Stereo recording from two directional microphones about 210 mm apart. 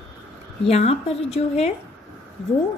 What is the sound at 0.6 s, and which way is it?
Speech, 30° left (ahead or behind).